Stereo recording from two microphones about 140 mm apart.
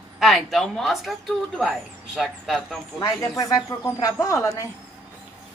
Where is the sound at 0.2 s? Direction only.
Centre (ahead or behind).